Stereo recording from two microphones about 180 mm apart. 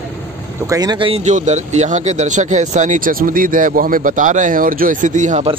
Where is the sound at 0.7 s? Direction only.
20° right (ahead or behind); by 5.5 s 40° right (ahead or behind).